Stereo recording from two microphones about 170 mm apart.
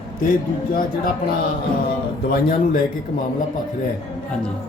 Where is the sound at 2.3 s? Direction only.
55° left (ahead or behind).